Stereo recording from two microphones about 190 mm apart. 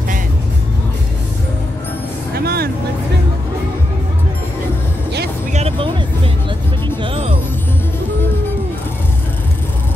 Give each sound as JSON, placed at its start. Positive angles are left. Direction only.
{"t": 2.3, "sound": "vehicle", "side_deg": -55}
{"t": 5.5, "sound": "music", "side_deg": -35}
{"t": 7.0, "sound": "music", "side_deg": -30}